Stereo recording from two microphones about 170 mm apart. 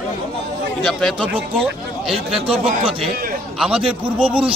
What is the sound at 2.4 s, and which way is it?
Speech, 35° right (ahead or behind).